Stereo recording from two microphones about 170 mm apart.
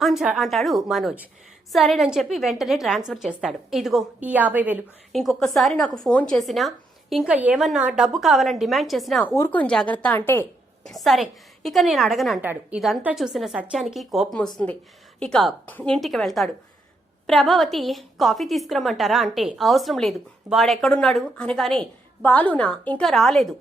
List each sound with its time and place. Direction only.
0.0 s a woman's voice: centre (ahead or behind)
5.1 s a woman's voice: centre (ahead or behind)
9.3 s speech: 10° left (ahead or behind)
10.8 s a woman's voice: centre (ahead or behind)
12.4 s a woman's voice: 10° right (ahead or behind)